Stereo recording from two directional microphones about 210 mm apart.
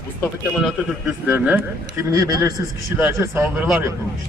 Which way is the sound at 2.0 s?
15° right (ahead or behind).